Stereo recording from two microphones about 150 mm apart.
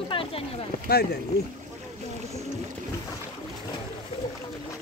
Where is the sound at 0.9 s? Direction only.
90° left.